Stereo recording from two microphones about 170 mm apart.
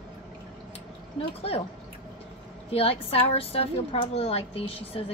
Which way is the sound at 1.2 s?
35° left (ahead or behind).